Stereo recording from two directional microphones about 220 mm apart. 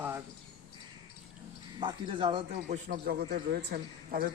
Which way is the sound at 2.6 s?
40° right (ahead or behind).